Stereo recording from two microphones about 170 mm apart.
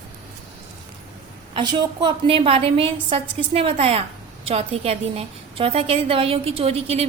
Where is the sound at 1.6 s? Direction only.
25° right (ahead or behind).